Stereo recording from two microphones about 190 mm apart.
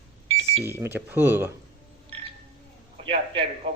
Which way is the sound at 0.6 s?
10° right (ahead or behind).